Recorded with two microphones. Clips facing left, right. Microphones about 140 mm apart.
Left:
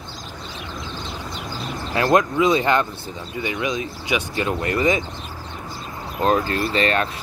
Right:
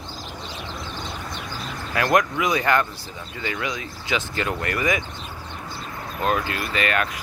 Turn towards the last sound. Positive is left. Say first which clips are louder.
# left 4 dB
turn(degrees=30)  # may be behind; listen again after turning